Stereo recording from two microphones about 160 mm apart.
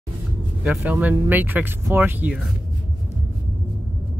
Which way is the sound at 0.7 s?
10° right (ahead or behind).